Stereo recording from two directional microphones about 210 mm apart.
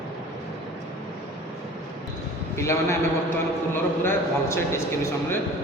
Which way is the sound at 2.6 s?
10° left (ahead or behind).